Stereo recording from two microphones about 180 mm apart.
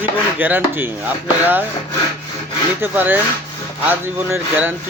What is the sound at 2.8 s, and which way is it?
Speech, 10° right (ahead or behind).